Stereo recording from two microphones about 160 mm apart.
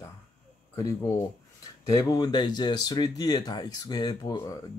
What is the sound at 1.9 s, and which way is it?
Speech, 20° left (ahead or behind).